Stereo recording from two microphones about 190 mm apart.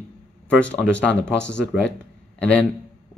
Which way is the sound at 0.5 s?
5° left (ahead or behind).